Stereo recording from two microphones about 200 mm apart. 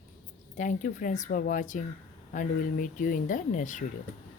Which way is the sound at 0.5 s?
40° left (ahead or behind).